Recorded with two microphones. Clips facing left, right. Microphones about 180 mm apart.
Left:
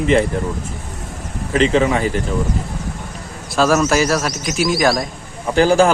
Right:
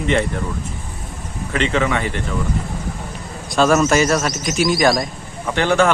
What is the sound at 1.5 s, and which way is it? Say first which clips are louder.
Speech: left 4 dB; 30° left (ahead or behind).